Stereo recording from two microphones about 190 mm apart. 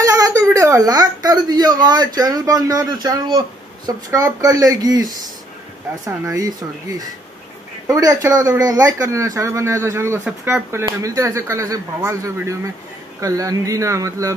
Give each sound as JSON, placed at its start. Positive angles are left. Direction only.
{"t": 0.0, "sound": "speech", "side_deg": -15}